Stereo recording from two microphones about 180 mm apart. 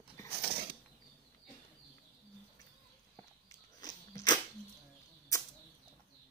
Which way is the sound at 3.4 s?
20° left (ahead or behind).